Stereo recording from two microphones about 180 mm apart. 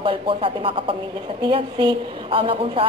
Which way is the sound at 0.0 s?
30° right (ahead or behind).